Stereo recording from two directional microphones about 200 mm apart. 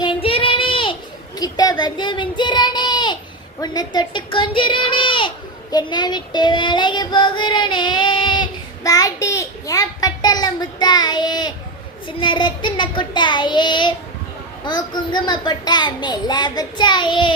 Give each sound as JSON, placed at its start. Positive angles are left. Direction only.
{"t": 0.0, "sound": "child singing", "side_deg": 25}
{"t": 1.4, "sound": "speech", "side_deg": 20}
{"t": 5.7, "sound": "child singing", "side_deg": 20}